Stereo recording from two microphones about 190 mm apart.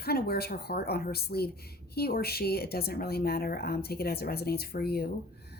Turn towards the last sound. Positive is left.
turn(degrees=55)  # may be behind; listen again after turning